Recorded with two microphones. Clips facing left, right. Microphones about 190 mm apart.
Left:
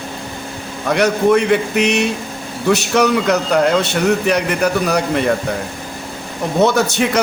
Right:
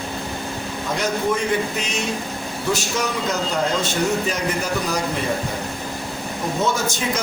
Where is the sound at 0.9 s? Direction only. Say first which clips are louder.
Left 9 dB; 70° left (ahead or behind).